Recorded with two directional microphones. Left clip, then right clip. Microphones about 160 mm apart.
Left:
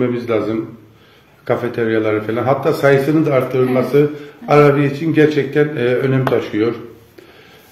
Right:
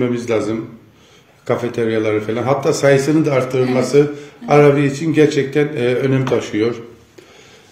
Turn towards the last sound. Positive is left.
turn(degrees=-30)  # may be behind; listen again after turning